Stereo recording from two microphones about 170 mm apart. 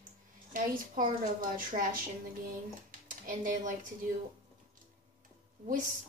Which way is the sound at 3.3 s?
50° right (ahead or behind).